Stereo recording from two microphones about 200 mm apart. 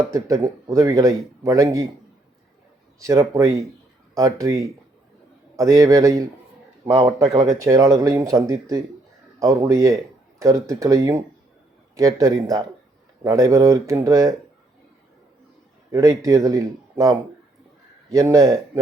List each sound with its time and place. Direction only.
0.1 s speech: 15° right (ahead or behind)
3.0 s speech: 15° right (ahead or behind)
6.8 s a man's voice: 25° right (ahead or behind)
7.3 s speech: 15° right (ahead or behind)
15.9 s speech: 15° right (ahead or behind)